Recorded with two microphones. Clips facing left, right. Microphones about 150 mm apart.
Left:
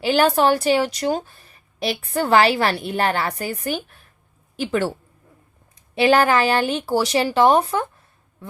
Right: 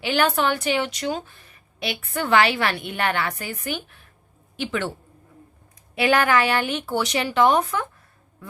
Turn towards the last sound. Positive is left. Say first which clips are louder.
# left 3 dB
turn(degrees=30)  # may be behind; listen again after turning